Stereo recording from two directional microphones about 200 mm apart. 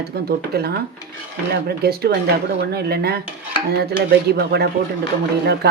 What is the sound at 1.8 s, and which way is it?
Speech, 50° right (ahead or behind).